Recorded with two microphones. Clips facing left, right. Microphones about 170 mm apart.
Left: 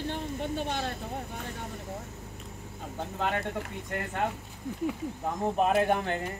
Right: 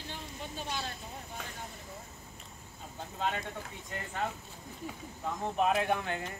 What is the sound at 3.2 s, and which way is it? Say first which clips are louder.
Speech: left 4 dB; 60° left (ahead or behind).